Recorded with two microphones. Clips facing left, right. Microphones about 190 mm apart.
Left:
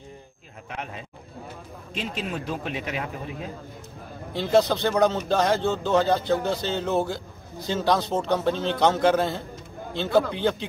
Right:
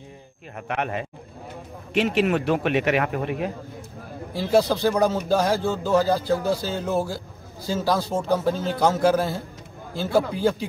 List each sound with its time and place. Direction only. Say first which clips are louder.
0.6 s a man's voice: right 9 dB; 65° right (ahead or behind)
4.3 s speech: right 1 dB; 5° right (ahead or behind)